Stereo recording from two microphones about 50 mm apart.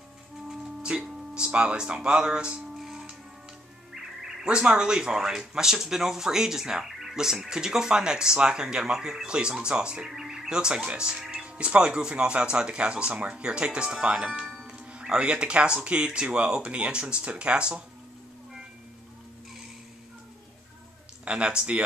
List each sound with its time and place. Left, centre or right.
0.5 s speech: centre
2.8 s music: centre
3.9 s speech: centre
21.3 s speech: right